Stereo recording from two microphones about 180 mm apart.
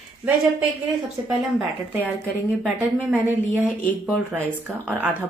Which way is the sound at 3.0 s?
10° right (ahead or behind).